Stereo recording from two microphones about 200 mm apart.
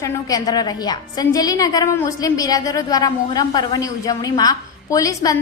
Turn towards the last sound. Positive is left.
turn(degrees=15)  # may be behind; listen again after turning